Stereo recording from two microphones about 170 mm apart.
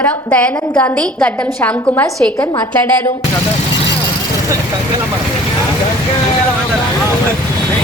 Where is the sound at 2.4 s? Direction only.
25° left (ahead or behind).